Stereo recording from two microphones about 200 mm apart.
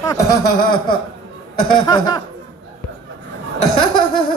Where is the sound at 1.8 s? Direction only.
20° left (ahead or behind).